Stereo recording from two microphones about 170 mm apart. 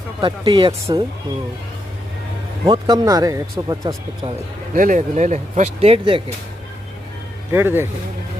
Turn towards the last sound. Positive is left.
turn(degrees=-15)  # may be behind; listen again after turning